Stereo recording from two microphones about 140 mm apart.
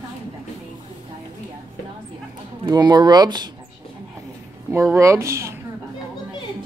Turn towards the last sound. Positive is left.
turn(degrees=-20)  # may be behind; listen again after turning